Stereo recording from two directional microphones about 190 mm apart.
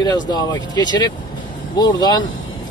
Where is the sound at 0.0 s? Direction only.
20° left (ahead or behind).